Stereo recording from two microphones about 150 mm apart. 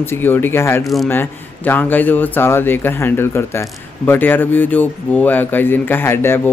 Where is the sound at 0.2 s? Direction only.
15° left (ahead or behind).